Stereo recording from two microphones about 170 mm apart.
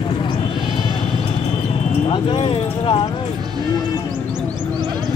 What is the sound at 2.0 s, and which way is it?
Speech, 30° left (ahead or behind).